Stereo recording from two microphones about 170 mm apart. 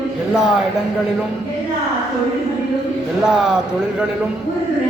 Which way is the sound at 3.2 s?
5° right (ahead or behind).